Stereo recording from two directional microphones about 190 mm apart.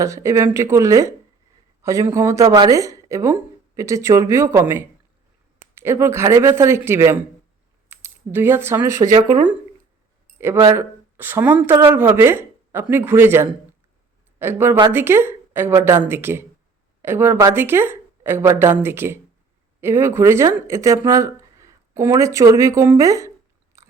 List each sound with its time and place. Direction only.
0.0 s speech: 15° right (ahead or behind)
10.3 s speech: 15° right (ahead or behind)